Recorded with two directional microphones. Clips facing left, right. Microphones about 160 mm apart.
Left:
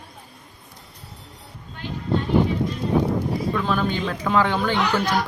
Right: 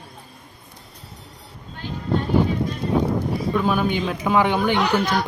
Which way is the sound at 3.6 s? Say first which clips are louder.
Right 2 dB; 10° right (ahead or behind).